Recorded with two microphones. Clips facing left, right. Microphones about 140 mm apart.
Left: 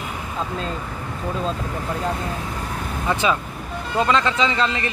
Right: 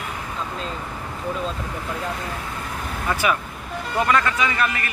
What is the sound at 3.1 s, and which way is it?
A man's voice, 25° left (ahead or behind).